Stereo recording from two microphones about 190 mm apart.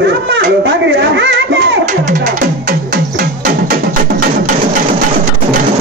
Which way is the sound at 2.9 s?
50° right (ahead or behind).